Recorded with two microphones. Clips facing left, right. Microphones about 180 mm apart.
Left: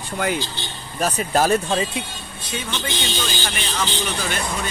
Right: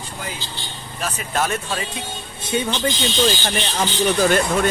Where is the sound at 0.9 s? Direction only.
40° left (ahead or behind).